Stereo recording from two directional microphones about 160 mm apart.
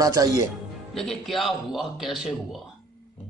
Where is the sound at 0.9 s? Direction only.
Centre (ahead or behind).